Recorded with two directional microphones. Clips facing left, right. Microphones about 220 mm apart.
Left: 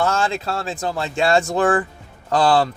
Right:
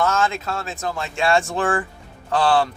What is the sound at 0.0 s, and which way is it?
Speech, 30° left (ahead or behind).